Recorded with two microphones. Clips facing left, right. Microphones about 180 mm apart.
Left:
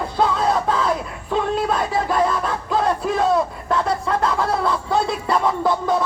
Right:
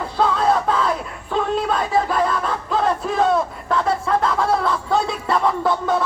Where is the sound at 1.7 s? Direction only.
5° left (ahead or behind).